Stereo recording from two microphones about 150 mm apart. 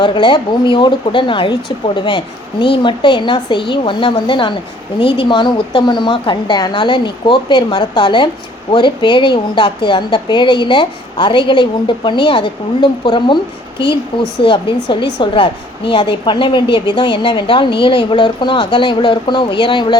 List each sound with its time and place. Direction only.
0.0 s a woman's voice: 30° left (ahead or behind)